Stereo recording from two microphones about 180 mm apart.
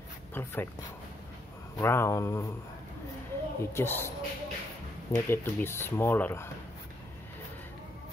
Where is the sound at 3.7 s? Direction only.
15° left (ahead or behind).